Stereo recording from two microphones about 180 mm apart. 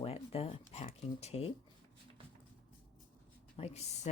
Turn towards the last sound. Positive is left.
turn(degrees=35)  # may be behind; listen again after turning